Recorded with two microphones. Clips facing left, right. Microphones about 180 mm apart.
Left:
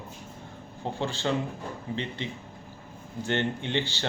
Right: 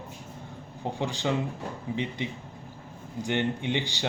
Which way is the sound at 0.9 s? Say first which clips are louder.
Even; 15° right (ahead or behind).